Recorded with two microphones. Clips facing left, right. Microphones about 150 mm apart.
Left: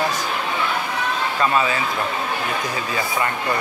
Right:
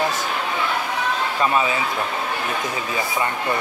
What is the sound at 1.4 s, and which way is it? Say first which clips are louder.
Speech: left 1 dB; 15° right (ahead or behind).